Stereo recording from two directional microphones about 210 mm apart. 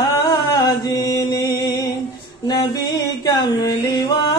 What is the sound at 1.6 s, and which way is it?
Music, 20° left (ahead or behind).